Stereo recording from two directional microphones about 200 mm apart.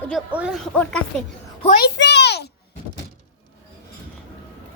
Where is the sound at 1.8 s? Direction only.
55° left (ahead or behind).